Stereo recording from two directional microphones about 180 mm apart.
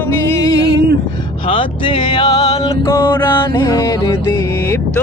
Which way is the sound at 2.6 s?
15° left (ahead or behind).